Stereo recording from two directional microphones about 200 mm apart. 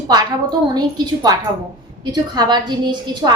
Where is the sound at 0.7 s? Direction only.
20° right (ahead or behind).